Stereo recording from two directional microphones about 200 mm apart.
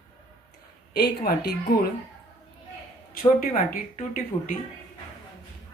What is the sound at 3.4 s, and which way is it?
A woman's voice, 40° left (ahead or behind).